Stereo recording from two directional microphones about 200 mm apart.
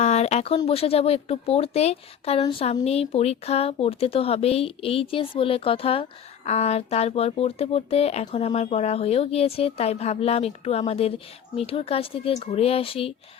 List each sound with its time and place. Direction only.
0.0 s speech: 35° left (ahead or behind)